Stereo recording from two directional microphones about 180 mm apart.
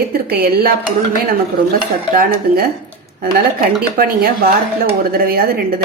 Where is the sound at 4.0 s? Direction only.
55° right (ahead or behind).